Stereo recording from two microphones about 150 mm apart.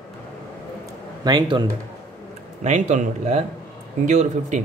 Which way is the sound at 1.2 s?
30° right (ahead or behind).